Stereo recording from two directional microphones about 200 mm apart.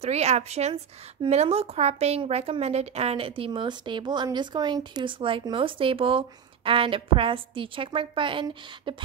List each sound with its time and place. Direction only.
0.0 s a woman's voice: 35° right (ahead or behind)